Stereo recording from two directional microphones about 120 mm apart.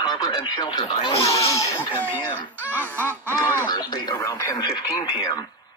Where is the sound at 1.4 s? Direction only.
25° left (ahead or behind).